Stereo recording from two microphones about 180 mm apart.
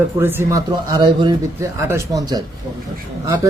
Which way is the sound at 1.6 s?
15° right (ahead or behind).